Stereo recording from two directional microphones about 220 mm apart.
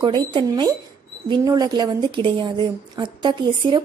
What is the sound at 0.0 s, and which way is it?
A woman's voice, 20° right (ahead or behind).